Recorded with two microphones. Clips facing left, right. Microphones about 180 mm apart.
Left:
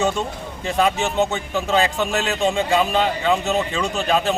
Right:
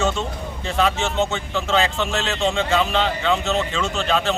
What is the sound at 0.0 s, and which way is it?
A man's voice, 15° left (ahead or behind).